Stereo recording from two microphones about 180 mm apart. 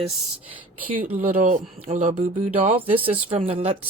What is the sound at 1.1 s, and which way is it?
Speech, 45° right (ahead or behind).